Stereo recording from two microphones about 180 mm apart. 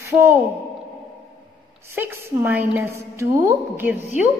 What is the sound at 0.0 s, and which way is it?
Speech, 15° right (ahead or behind).